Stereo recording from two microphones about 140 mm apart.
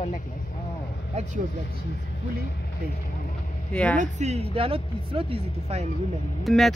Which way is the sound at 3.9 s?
55° right (ahead or behind).